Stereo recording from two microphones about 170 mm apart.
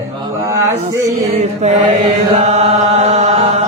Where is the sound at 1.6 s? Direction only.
40° right (ahead or behind).